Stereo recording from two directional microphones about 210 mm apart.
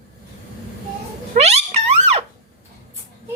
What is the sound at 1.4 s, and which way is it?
Music, 30° right (ahead or behind).